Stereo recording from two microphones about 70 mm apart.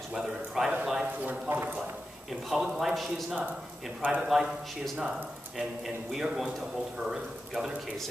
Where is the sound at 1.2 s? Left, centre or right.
Right.